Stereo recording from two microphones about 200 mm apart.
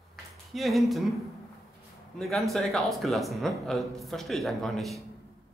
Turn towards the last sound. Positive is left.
turn(degrees=0)  # may be behind; listen again after turning